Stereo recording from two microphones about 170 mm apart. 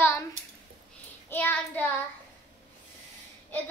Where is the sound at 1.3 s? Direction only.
10° left (ahead or behind).